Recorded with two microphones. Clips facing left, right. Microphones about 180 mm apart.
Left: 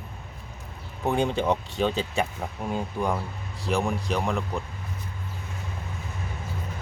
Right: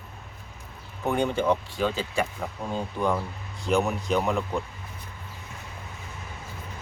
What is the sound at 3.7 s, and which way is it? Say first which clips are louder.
Speech: right 2 dB; centre (ahead or behind).